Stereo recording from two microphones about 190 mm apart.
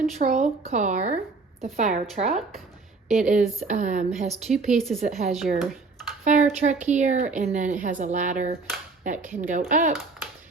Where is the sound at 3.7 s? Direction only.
40° right (ahead or behind).